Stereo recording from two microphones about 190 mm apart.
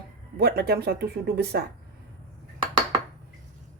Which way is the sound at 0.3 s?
55° right (ahead or behind).